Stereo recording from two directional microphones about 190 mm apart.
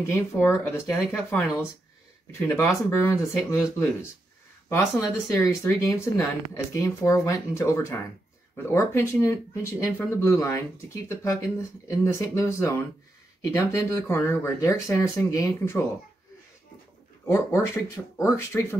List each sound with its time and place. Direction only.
0.0 s speech: 15° left (ahead or behind)
0.8 s speech: centre (ahead or behind)
2.3 s speech: 15° left (ahead or behind)
5.7 s speech: 15° left (ahead or behind)
17.3 s speech: 15° left (ahead or behind)